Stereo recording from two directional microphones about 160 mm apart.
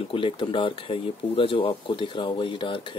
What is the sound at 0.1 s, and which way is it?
Speech, 30° left (ahead or behind).